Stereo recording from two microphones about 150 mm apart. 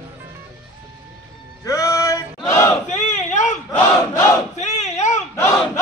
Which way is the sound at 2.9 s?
55° left (ahead or behind).